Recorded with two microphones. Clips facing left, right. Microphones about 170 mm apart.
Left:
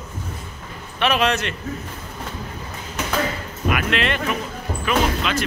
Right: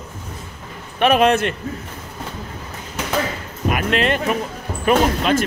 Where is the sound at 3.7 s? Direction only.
40° right (ahead or behind).